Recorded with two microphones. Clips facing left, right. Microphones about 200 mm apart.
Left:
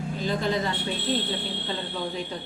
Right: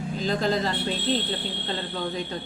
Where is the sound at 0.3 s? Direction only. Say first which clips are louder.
Right 2 dB; 40° right (ahead or behind).